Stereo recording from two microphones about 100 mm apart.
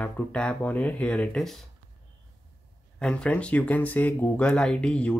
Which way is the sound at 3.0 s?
10° left (ahead or behind).